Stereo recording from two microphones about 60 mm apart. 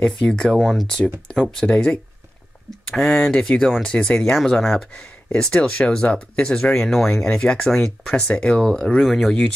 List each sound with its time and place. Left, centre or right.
0.0 s speech: centre
0.6 s speech: centre
0.8 s speech: centre
8.1 s speech: centre
9.0 s speech: centre